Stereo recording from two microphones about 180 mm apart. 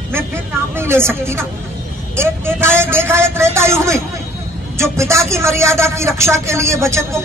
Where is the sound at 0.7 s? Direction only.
15° right (ahead or behind).